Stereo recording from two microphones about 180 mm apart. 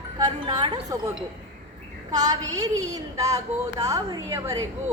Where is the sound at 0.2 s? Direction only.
25° right (ahead or behind).